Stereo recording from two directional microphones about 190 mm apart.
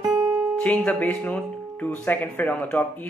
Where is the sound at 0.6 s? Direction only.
5° left (ahead or behind).